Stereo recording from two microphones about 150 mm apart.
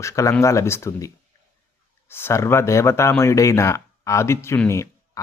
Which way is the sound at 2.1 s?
15° left (ahead or behind).